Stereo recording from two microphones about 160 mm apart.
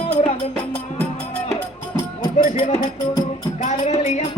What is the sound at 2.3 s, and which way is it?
Music, 40° left (ahead or behind).